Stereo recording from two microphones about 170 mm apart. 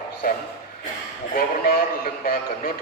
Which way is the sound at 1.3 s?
60° left (ahead or behind).